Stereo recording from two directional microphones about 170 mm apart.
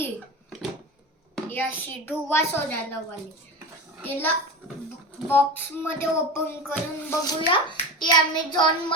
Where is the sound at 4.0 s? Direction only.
10° left (ahead or behind).